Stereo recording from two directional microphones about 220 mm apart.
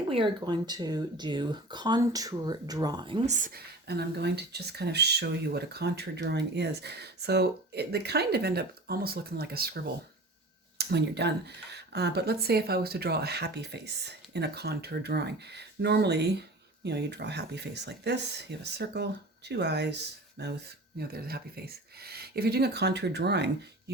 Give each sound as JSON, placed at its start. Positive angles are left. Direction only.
{"t": 0.1, "sound": "speech", "side_deg": -20}
{"t": 3.2, "sound": "speech", "side_deg": -35}